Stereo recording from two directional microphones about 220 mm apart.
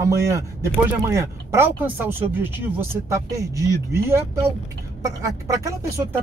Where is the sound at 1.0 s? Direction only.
10° right (ahead or behind).